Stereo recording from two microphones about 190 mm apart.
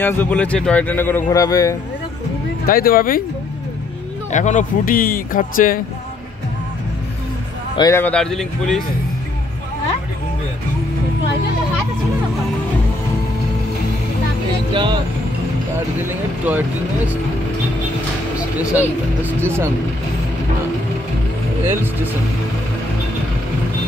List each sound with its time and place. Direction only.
0.0 s speech: 10° left (ahead or behind)
2.6 s speech: 50° left (ahead or behind)
4.3 s speech: 40° left (ahead or behind)
7.7 s a man's voice: 20° left (ahead or behind)
8.0 s speech: 5° left (ahead or behind)
14.7 s speech: 25° right (ahead or behind)
16.4 s speech: 10° right (ahead or behind)
18.4 s speech: 5° right (ahead or behind)